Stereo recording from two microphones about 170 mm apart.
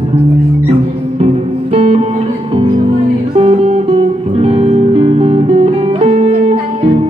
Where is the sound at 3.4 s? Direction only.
35° right (ahead or behind).